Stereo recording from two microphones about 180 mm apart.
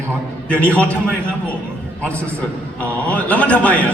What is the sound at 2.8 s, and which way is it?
A man's voice, 10° left (ahead or behind).